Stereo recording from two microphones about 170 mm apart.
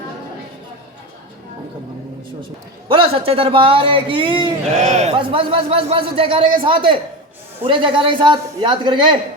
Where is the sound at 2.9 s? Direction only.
35° right (ahead or behind).